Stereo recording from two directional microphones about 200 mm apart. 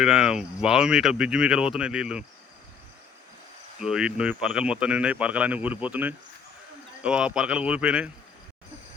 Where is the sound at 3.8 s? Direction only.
5° right (ahead or behind).